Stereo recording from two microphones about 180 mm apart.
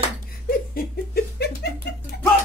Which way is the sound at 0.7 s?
55° left (ahead or behind).